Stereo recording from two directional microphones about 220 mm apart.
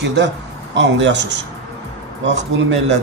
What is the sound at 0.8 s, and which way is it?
Speech, 55° right (ahead or behind).